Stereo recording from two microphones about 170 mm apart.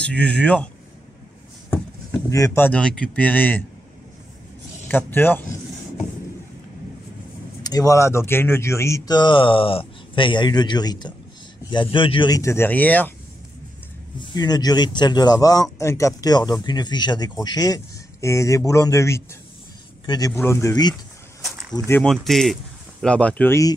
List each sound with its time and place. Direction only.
0.0 s speech: 5° left (ahead or behind)
2.2 s speech: 20° left (ahead or behind)
4.8 s speech: 10° left (ahead or behind)
7.6 s speech: 20° left (ahead or behind)
14.3 s speech: 25° left (ahead or behind)
22.0 s speech: centre (ahead or behind)